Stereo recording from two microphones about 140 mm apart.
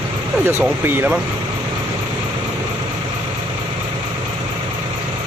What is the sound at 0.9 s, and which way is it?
Speech, 10° right (ahead or behind).